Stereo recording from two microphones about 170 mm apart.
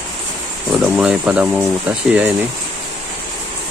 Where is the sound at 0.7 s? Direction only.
5° right (ahead or behind).